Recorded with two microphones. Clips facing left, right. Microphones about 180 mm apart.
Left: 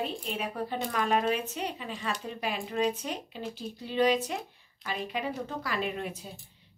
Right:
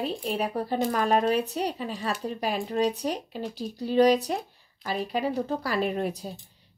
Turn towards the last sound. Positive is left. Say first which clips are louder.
# right 6 dB
turn(degrees=-40)  # may be behind; listen again after turning